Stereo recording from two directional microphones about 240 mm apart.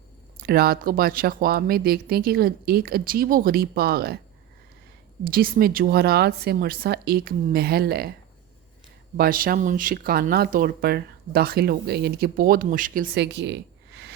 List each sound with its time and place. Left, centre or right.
0.3 s speech: right
5.2 s speech: right
9.1 s speech: right